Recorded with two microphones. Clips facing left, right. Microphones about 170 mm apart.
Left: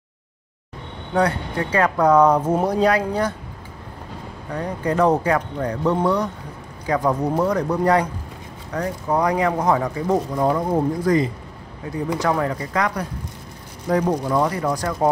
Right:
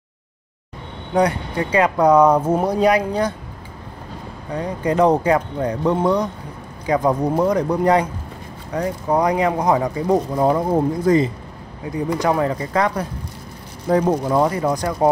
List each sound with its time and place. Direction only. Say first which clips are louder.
1.1 s speech: right 2 dB; 15° right (ahead or behind)
4.6 s speech: right 2 dB; 15° right (ahead or behind)